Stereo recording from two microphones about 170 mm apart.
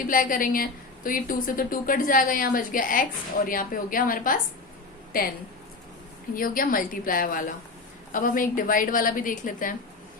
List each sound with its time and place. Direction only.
0.0 s a woman's voice: 55° left (ahead or behind)
6.3 s a woman's voice: 55° left (ahead or behind)